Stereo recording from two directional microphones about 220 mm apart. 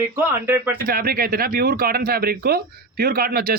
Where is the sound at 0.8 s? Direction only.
40° right (ahead or behind).